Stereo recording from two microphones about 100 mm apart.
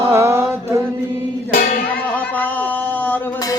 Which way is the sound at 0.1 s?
25° right (ahead or behind).